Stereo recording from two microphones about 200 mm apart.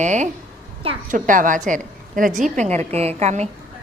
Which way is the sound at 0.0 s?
35° right (ahead or behind).